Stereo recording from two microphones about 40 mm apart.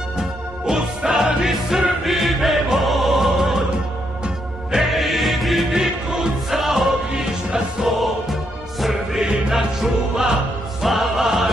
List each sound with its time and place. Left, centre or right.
0.2 s music: centre
4.8 s music: centre
7.1 s music: centre
8.0 s music: centre
9.2 s music: centre